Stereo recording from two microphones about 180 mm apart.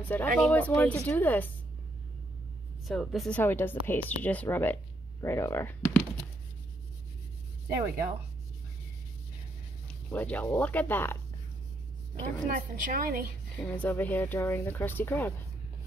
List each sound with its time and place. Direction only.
0.0 s speech: 10° left (ahead or behind)
2.9 s speech: centre (ahead or behind)
9.8 s speech: 10° left (ahead or behind)
12.4 s a woman's voice: 50° right (ahead or behind)
13.6 s speech: 10° left (ahead or behind)